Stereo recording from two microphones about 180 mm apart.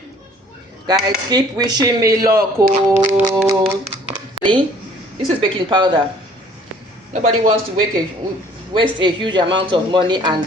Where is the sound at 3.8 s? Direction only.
30° right (ahead or behind).